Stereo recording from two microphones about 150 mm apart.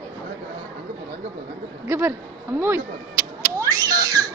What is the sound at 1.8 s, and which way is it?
Speech, 15° right (ahead or behind).